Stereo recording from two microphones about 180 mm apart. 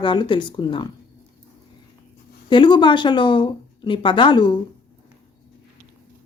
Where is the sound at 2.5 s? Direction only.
25° left (ahead or behind).